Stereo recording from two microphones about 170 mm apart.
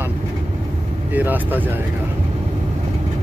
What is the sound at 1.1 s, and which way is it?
Speech, 10° right (ahead or behind).